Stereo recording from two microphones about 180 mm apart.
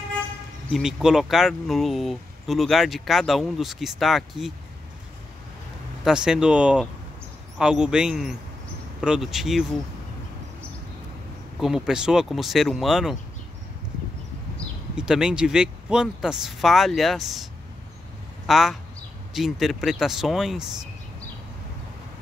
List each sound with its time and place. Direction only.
0.7 s speech: 5° right (ahead or behind)
6.0 s speech: 5° right (ahead or behind)
11.6 s speech: 5° right (ahead or behind)
15.0 s speech: 5° right (ahead or behind)
18.5 s speech: centre (ahead or behind)